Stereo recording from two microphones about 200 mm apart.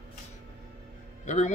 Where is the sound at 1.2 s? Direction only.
35° left (ahead or behind).